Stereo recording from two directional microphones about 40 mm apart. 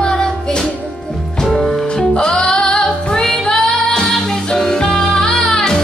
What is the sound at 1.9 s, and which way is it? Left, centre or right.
Music, centre.